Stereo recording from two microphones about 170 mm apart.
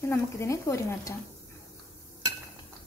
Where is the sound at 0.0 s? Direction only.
15° left (ahead or behind).